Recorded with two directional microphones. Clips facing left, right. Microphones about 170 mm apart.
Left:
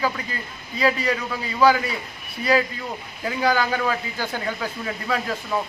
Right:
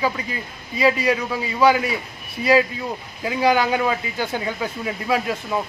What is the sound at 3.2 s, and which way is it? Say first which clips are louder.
Speech: right 3 dB; 15° right (ahead or behind).